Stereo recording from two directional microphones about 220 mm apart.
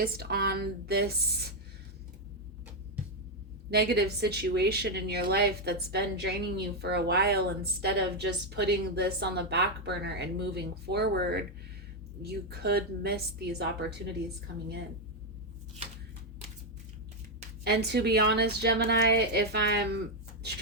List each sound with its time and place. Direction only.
0.0 s speech: 45° right (ahead or behind)
3.7 s speech: 45° right (ahead or behind)
17.6 s speech: 50° right (ahead or behind)